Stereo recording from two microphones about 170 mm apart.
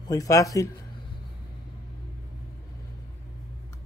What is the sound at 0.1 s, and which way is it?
Speech, 20° left (ahead or behind).